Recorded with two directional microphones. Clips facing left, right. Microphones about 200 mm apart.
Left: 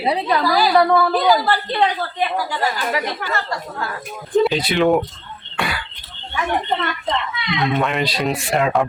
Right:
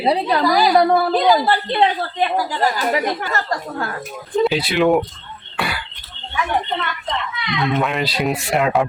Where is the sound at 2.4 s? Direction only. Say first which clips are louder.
Right 3 dB; 35° right (ahead or behind).